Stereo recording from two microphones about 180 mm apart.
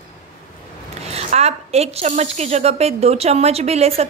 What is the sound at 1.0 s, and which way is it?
A woman's voice, 35° right (ahead or behind).